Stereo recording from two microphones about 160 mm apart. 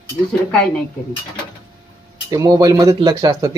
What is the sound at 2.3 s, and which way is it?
Speech, 20° right (ahead or behind).